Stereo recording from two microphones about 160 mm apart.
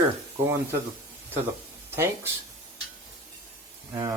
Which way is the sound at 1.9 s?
15° right (ahead or behind).